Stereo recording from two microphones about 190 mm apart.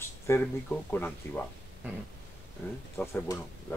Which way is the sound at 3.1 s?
15° left (ahead or behind).